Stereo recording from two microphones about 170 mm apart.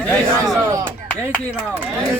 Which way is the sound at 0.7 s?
15° right (ahead or behind).